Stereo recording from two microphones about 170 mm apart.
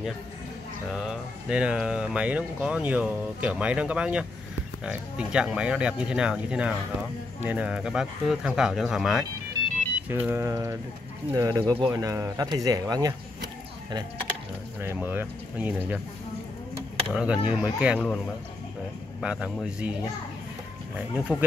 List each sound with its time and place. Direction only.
0.9 s speech: 5° right (ahead or behind); by 13.1 s 20° right (ahead or behind)
14.8 s speech: 15° right (ahead or behind)
17.1 s speech: 5° right (ahead or behind)
19.2 s speech: 5° right (ahead or behind)
20.9 s speech: 10° right (ahead or behind)